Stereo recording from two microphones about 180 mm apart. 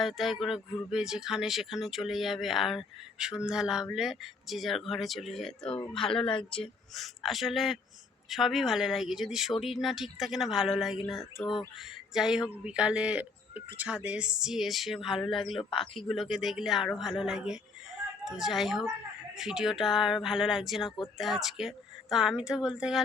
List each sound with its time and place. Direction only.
0.0 s speech: centre (ahead or behind)
5.6 s speech: 30° left (ahead or behind)
6.9 s speech: centre (ahead or behind)
15.5 s speech: 30° left (ahead or behind)
16.0 s speech: centre (ahead or behind)